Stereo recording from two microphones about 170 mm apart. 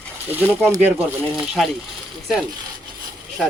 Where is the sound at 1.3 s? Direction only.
5° right (ahead or behind).